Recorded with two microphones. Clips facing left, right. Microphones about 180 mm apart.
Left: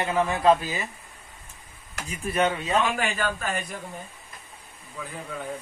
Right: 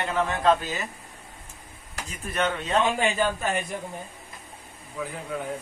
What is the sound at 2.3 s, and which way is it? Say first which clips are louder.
Speech: left 1 dB; 5° left (ahead or behind).